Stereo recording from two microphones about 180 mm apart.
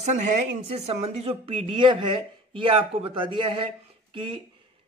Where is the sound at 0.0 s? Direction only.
40° right (ahead or behind).